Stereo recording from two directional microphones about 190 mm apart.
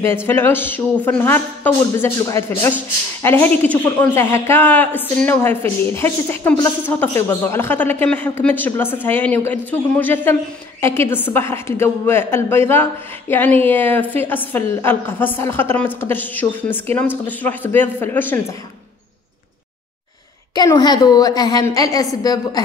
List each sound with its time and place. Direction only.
0.3 s speech: 10° left (ahead or behind)
20.5 s a woman's voice: 20° left (ahead or behind)